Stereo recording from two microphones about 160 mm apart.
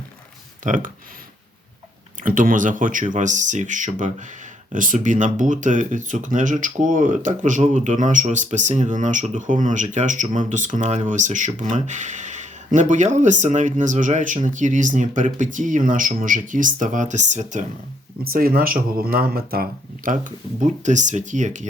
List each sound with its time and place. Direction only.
0.6 s speech: 55° right (ahead or behind)
2.2 s speech: 55° right (ahead or behind)
18.2 s speech: 70° right (ahead or behind)
20.1 s speech: 55° right (ahead or behind)